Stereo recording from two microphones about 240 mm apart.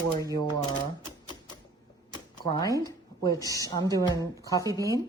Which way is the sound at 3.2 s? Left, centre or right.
Centre.